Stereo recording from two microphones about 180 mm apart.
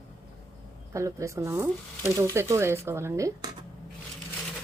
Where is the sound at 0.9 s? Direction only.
15° right (ahead or behind).